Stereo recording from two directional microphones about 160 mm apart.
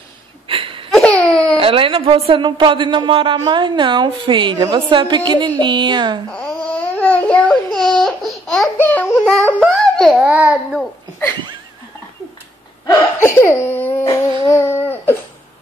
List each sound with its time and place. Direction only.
0.5 s a sound: 35° right (ahead or behind)
0.9 s laughter: 5° left (ahead or behind)
1.6 s speech: 35° right (ahead or behind)
6.3 s baby cry: 5° left (ahead or behind)
8.7 s a sound: 10° left (ahead or behind)
10.3 s a child's voice: 5° right (ahead or behind)
12.8 s whimper: 15° left (ahead or behind)
14.5 s baby cry: 15° left (ahead or behind)